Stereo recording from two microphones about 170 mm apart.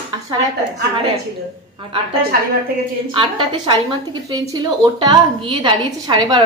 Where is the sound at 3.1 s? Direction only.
30° right (ahead or behind).